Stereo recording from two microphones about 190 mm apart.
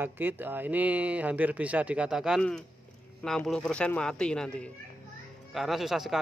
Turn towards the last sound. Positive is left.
turn(degrees=0)  # may be behind; listen again after turning